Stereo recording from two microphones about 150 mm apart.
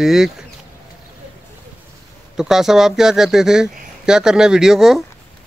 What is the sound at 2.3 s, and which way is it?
Speech, 5° right (ahead or behind).